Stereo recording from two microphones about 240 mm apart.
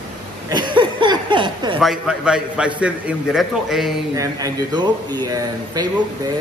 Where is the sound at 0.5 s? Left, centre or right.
Centre.